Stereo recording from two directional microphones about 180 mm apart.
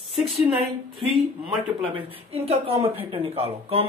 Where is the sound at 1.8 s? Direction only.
30° right (ahead or behind).